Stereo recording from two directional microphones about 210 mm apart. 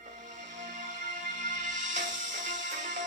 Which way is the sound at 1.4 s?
35° right (ahead or behind).